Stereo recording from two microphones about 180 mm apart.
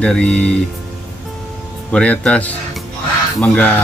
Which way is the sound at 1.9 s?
5° left (ahead or behind).